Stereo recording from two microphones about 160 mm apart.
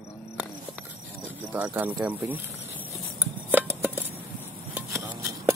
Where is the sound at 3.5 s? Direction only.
10° right (ahead or behind).